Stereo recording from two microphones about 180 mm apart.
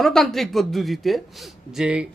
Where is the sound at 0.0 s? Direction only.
Centre (ahead or behind).